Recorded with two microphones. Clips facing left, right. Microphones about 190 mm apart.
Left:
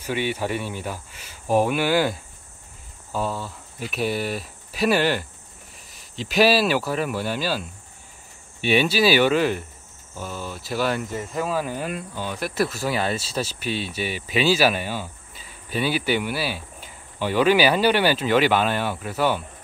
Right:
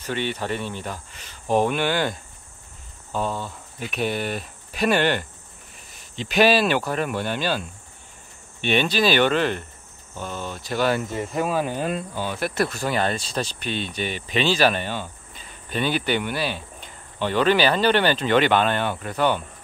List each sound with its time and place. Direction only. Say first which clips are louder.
0.0 s speech: left 2 dB; 10° left (ahead or behind)
11.3 s speech: right 2 dB; 25° right (ahead or behind)
12.3 s speech: even; centre (ahead or behind)